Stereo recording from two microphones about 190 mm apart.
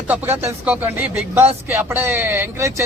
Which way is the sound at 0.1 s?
10° right (ahead or behind).